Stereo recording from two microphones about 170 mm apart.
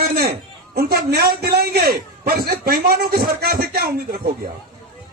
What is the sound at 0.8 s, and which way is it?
A man's voice, 65° right (ahead or behind).